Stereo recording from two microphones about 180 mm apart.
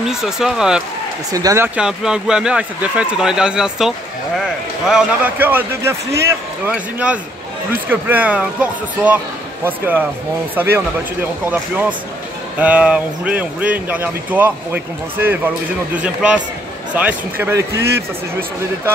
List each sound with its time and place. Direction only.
0.0 s speech: centre (ahead or behind)
1.3 s speech: 15° right (ahead or behind)
1.8 s speech: 5° right (ahead or behind)